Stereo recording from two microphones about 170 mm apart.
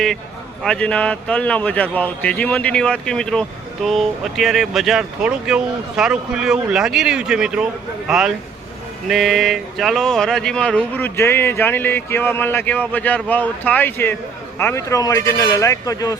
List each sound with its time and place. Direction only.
0.6 s a man's voice: 5° left (ahead or behind)